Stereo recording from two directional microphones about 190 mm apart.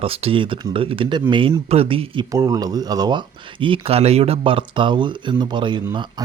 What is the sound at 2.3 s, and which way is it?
Speech, 20° right (ahead or behind).